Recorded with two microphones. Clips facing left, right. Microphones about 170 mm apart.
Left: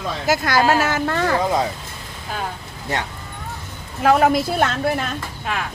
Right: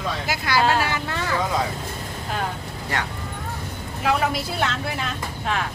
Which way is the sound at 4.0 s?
50° left (ahead or behind).